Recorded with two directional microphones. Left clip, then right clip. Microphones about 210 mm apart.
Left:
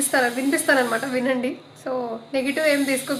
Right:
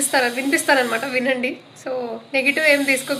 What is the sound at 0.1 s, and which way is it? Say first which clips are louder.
A woman's voice: right 2 dB; 10° left (ahead or behind).